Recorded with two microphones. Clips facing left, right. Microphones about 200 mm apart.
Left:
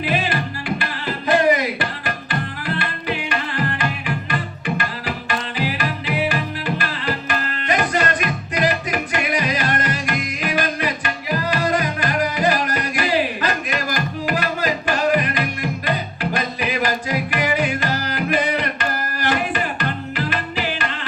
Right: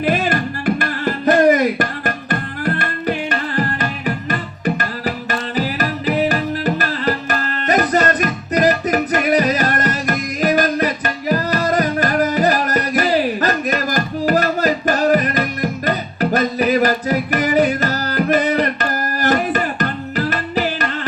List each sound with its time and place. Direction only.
0.0 s music: 45° right (ahead or behind)